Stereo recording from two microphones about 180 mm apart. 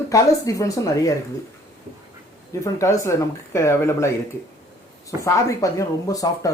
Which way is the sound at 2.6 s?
15° left (ahead or behind).